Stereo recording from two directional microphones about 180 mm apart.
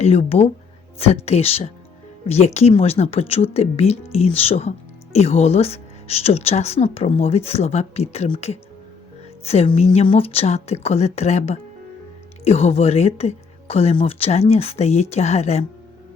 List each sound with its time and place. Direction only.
0.0 s a woman's voice: 35° left (ahead or behind)